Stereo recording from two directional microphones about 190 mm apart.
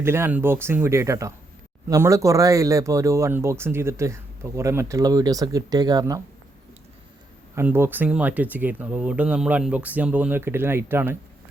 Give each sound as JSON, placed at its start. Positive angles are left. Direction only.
{"t": 0.0, "sound": "speech", "side_deg": -10}
{"t": 7.5, "sound": "speech", "side_deg": -10}